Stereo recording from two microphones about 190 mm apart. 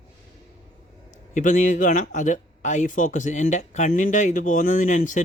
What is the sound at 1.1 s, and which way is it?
Speech, 40° left (ahead or behind).